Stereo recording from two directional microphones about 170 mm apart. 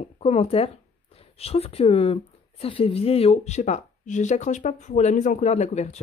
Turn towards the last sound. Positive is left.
turn(degrees=40)  # may be behind; listen again after turning